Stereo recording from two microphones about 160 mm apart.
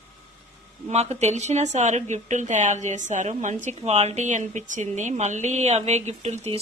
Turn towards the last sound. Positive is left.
turn(degrees=-40)  # may be behind; listen again after turning